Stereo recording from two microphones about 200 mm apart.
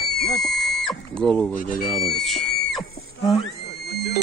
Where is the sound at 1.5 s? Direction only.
45° left (ahead or behind).